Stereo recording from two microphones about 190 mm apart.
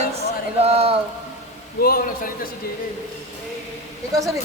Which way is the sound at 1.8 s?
50° left (ahead or behind).